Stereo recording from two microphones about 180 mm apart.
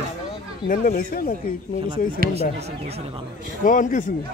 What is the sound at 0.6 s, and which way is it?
Speech, 50° left (ahead or behind).